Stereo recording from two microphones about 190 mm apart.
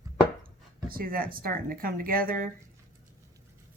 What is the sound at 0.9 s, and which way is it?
Speech, 50° right (ahead or behind).